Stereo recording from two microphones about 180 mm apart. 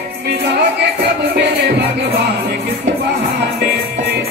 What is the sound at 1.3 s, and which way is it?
Music, 70° right (ahead or behind).